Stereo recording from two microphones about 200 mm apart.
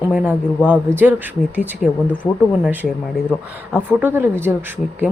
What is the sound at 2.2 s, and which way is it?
Speech, 20° left (ahead or behind).